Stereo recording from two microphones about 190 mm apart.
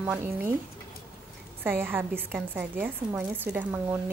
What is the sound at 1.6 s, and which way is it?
A woman's voice, 10° right (ahead or behind).